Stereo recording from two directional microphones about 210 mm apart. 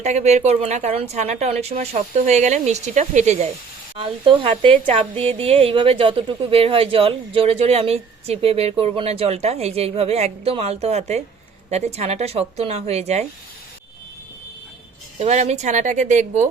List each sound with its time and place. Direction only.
0.0 s a woman's voice: 35° right (ahead or behind)
15.2 s a woman's voice: 30° right (ahead or behind)